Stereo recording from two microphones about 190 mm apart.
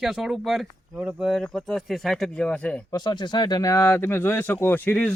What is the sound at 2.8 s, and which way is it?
Speech, 20° left (ahead or behind).